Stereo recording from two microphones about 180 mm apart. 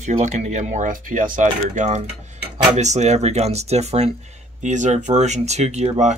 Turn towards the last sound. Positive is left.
turn(degrees=-40)  # may be behind; listen again after turning